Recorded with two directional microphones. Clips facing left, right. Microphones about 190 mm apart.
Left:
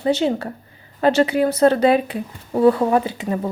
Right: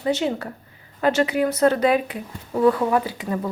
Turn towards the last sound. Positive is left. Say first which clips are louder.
# left 3 dB
turn(degrees=25)  # may be behind; listen again after turning